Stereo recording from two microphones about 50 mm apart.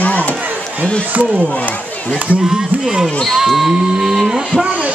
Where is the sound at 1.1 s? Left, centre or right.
Right.